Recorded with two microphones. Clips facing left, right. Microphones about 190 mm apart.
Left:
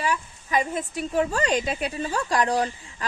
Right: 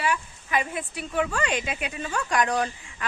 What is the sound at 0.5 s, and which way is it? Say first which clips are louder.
A woman's voice: left 3 dB; 40° left (ahead or behind).